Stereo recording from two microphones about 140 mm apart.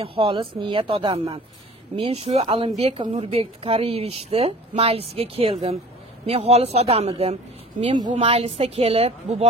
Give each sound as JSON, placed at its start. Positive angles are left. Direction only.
{"t": 0.0, "sound": "speech", "side_deg": -40}